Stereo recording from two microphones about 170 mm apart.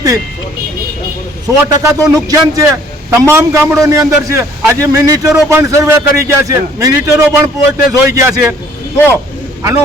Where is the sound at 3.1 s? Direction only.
15° right (ahead or behind).